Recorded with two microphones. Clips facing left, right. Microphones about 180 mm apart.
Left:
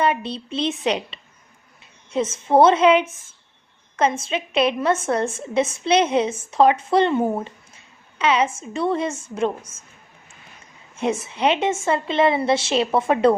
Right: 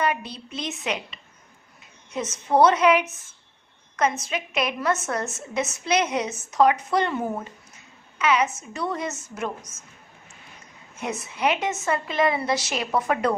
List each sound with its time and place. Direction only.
0.0 s a woman's voice: 25° left (ahead or behind)
10.9 s a woman's voice: 30° left (ahead or behind)